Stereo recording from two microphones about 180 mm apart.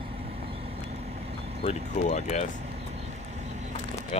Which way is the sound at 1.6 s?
40° left (ahead or behind).